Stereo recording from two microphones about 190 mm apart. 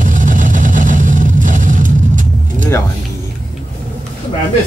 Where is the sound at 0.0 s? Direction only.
45° right (ahead or behind).